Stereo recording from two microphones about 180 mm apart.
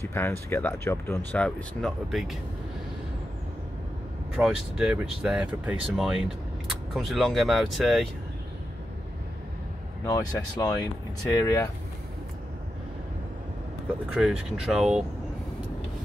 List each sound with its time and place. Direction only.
0.0 s speech: 15° left (ahead or behind)
4.4 s speech: 5° right (ahead or behind)
10.0 s speech: 20° left (ahead or behind)
14.1 s speech: 5° right (ahead or behind)